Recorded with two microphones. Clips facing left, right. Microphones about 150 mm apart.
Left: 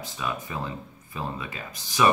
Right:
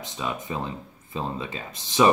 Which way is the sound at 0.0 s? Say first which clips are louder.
Right 1 dB; 20° right (ahead or behind).